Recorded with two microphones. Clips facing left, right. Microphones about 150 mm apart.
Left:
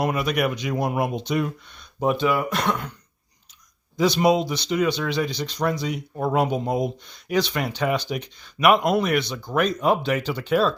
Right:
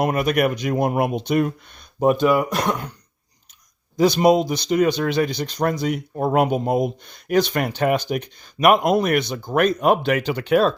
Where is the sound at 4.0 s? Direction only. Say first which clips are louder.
Right 3 dB; 45° right (ahead or behind).